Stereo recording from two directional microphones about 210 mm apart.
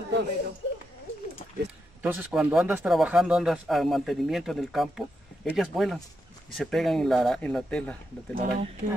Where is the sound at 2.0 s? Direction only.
5° right (ahead or behind).